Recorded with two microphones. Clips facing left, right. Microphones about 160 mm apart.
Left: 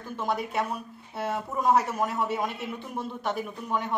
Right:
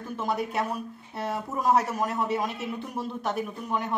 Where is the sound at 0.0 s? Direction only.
Centre (ahead or behind).